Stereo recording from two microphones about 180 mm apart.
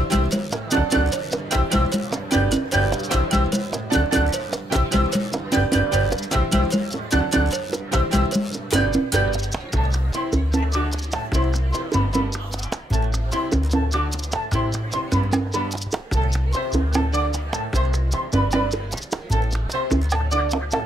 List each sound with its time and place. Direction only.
0.1 s music: centre (ahead or behind)